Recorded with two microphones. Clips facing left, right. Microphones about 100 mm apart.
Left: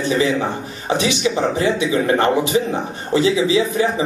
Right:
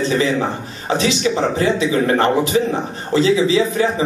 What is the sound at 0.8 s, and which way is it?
A man's voice, 20° left (ahead or behind).